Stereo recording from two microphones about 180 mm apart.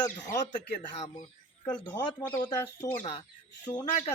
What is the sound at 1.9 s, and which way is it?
Speech, 25° left (ahead or behind).